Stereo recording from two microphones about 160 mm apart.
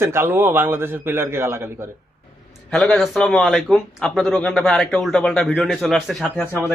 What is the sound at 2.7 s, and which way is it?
A man's voice, 5° left (ahead or behind).